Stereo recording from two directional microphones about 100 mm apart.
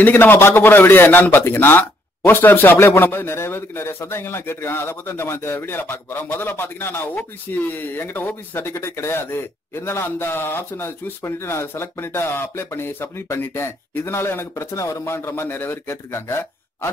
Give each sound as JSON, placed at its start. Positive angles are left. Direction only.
{"t": 0.0, "sound": "a man's voice", "side_deg": 20}